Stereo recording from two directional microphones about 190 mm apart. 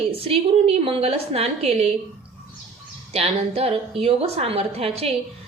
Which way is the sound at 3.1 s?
35° right (ahead or behind).